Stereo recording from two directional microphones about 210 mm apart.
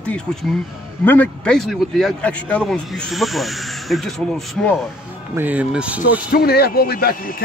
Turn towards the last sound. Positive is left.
turn(degrees=40)  # may be behind; listen again after turning